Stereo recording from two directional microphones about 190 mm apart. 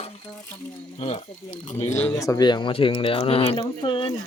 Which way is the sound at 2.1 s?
20° left (ahead or behind).